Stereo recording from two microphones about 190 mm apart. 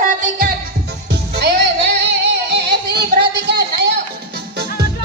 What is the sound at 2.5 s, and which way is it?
Music, 60° right (ahead or behind).